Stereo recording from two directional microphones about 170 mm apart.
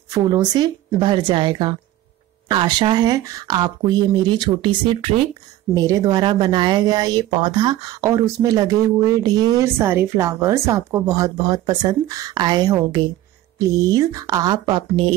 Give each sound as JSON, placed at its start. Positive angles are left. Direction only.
{"t": 0.1, "sound": "speech", "side_deg": -25}